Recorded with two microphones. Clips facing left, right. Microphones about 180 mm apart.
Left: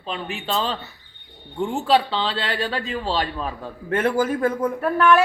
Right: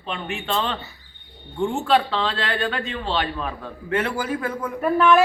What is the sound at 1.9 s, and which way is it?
A man's voice, 30° left (ahead or behind).